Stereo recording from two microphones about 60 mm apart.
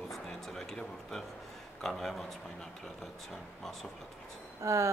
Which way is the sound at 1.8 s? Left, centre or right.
Centre.